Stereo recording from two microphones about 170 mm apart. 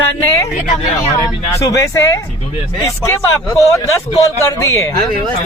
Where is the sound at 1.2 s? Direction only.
20° left (ahead or behind).